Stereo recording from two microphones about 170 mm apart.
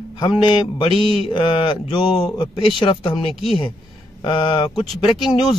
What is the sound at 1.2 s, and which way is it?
Speech, 35° left (ahead or behind).